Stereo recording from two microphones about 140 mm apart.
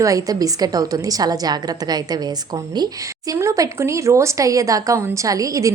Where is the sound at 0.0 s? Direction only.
25° right (ahead or behind).